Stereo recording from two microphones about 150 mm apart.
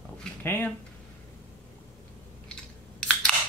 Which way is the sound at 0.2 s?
10° left (ahead or behind).